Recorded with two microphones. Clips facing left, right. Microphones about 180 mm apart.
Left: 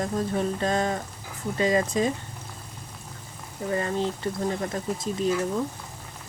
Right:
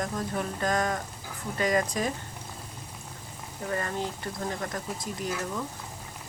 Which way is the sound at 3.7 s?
20° left (ahead or behind).